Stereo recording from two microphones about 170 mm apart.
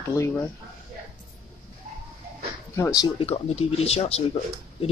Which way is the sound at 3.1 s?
35° left (ahead or behind).